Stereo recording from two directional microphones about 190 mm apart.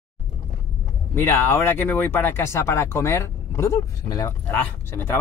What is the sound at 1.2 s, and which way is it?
Speech, 10° left (ahead or behind).